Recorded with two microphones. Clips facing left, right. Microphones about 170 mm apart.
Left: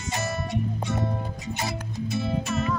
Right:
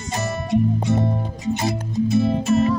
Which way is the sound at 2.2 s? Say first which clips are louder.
Right 9 dB; 35° right (ahead or behind).